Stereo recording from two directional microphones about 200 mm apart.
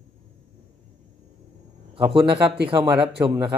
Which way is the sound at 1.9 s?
25° right (ahead or behind).